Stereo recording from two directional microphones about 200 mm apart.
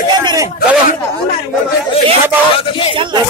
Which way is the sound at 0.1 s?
20° right (ahead or behind).